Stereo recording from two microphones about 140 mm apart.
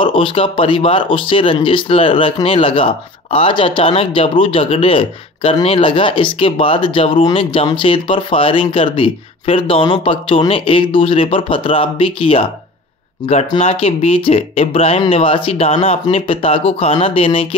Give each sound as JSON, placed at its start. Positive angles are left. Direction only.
{"t": 0.0, "sound": "speech", "side_deg": 40}
{"t": 13.6, "sound": "speech", "side_deg": 45}